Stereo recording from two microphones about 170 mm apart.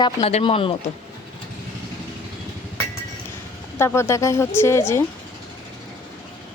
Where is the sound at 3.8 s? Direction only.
15° left (ahead or behind).